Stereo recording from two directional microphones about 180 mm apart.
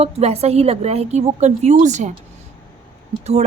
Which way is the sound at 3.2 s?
40° right (ahead or behind).